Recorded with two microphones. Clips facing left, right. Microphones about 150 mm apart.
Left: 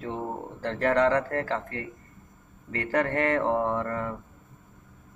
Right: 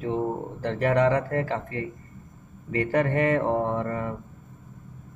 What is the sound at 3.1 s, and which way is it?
Speech, 15° right (ahead or behind).